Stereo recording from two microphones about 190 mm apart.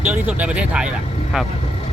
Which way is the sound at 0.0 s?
10° right (ahead or behind).